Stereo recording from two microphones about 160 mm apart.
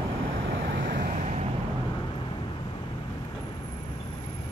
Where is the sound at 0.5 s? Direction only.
90° right.